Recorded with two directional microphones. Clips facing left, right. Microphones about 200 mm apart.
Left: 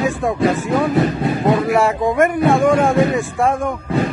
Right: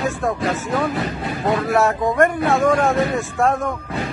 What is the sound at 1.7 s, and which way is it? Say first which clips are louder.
Speech: left 2 dB; 10° left (ahead or behind).